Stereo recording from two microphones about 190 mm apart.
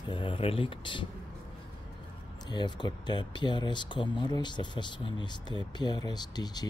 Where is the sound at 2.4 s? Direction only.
25° left (ahead or behind).